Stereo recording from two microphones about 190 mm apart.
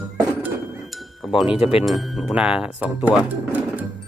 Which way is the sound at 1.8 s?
Centre (ahead or behind).